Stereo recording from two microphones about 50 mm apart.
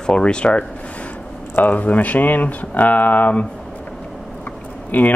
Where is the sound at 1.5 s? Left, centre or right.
Left.